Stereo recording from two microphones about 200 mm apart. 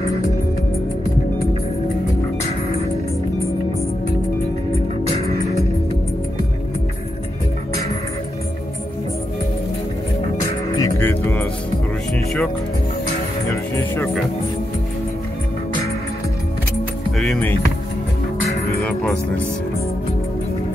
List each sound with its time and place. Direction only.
4.7 s music: 30° right (ahead or behind)
10.4 s music: 15° left (ahead or behind)
13.7 s speech: 10° left (ahead or behind)
17.2 s speech: 5° left (ahead or behind)
18.8 s music: 5° left (ahead or behind)